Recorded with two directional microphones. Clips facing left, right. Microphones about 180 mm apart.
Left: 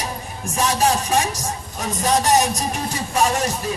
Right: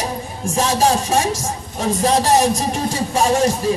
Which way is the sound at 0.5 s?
30° right (ahead or behind).